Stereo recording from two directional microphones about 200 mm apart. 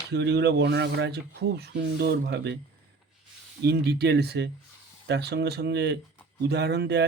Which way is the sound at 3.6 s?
55° right (ahead or behind).